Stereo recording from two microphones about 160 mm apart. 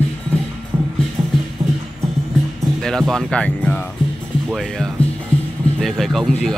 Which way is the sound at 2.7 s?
5° left (ahead or behind).